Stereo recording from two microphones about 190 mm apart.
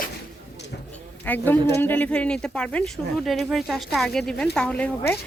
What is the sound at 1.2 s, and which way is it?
A woman's voice, 10° left (ahead or behind).